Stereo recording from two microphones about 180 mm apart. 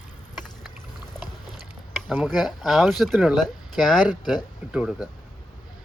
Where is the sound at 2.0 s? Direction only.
Centre (ahead or behind).